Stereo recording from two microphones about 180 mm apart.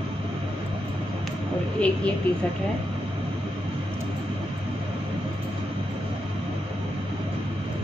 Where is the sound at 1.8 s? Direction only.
5° left (ahead or behind).